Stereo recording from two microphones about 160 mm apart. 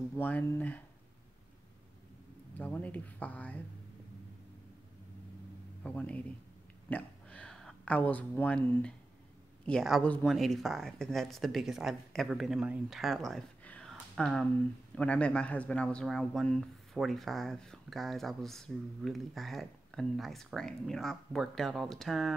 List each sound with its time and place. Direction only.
0.1 s speech: 10° left (ahead or behind)
2.5 s speech: 10° left (ahead or behind)
5.9 s speech: 5° left (ahead or behind)
6.9 s a sound: 10° left (ahead or behind)
9.7 s a man's voice: centre (ahead or behind)